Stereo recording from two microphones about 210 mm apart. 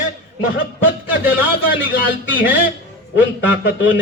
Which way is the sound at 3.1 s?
5° right (ahead or behind).